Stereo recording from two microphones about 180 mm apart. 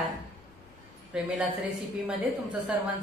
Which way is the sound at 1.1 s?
5° right (ahead or behind).